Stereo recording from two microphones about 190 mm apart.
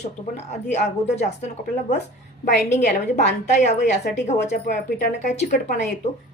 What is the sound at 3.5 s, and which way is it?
Speech, 40° left (ahead or behind).